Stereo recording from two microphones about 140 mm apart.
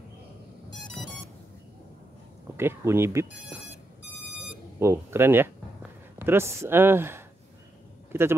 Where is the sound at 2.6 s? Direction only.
15° right (ahead or behind).